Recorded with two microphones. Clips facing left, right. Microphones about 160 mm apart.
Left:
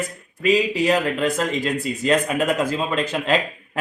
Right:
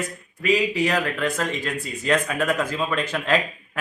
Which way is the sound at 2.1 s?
30° left (ahead or behind).